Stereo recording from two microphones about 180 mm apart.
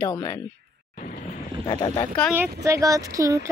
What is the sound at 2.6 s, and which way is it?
Speech, 20° right (ahead or behind).